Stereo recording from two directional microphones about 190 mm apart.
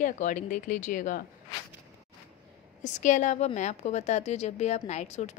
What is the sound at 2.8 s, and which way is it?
Speech, 40° left (ahead or behind).